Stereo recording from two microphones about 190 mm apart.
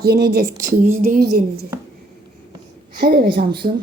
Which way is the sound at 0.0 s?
50° right (ahead or behind).